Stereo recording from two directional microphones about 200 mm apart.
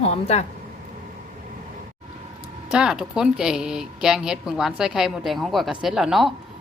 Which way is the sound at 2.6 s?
5° right (ahead or behind).